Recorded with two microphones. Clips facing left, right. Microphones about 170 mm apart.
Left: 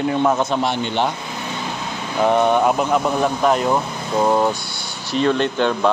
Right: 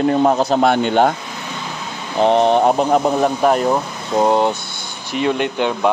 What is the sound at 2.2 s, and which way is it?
A man's voice, 30° right (ahead or behind).